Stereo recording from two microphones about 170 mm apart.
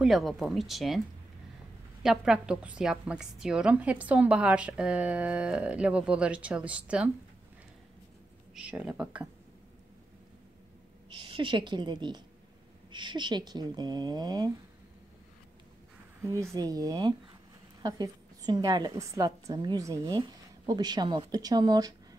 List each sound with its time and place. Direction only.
0.0 s speech: centre (ahead or behind)
2.0 s a woman's voice: 5° right (ahead or behind)
8.5 s a woman's voice: 5° right (ahead or behind)
11.2 s a woman's voice: 30° right (ahead or behind)
16.2 s a woman's voice: 20° right (ahead or behind)